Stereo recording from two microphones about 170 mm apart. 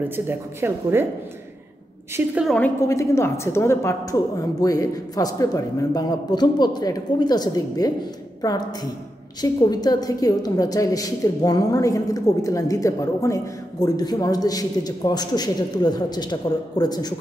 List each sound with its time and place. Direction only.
0.1 s speech: 15° right (ahead or behind)
2.1 s speech: 5° right (ahead or behind)
2.9 s a woman's voice: 15° left (ahead or behind)